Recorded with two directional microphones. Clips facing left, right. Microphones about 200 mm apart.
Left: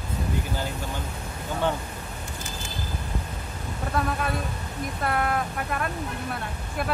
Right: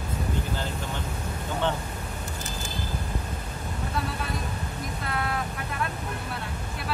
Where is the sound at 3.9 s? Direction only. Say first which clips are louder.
Left 5 dB; 50° left (ahead or behind).